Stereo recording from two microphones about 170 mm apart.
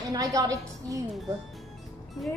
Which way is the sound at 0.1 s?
20° right (ahead or behind).